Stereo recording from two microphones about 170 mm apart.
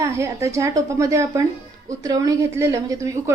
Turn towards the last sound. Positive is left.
turn(degrees=-15)  # may be behind; listen again after turning